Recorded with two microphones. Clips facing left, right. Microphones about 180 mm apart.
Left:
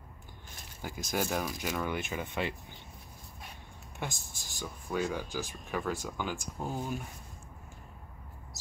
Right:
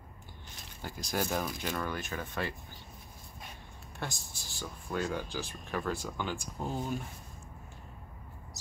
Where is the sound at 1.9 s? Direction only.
15° left (ahead or behind).